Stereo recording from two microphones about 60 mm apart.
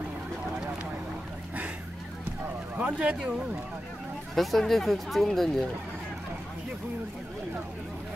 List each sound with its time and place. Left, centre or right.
2.8 s speech: centre
4.4 s speech: centre